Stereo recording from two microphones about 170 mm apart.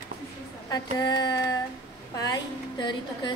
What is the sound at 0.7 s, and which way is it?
A woman's voice, 20° left (ahead or behind).